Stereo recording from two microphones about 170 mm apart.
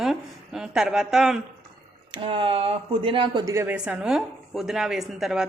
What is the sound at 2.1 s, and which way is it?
Speech, 30° right (ahead or behind).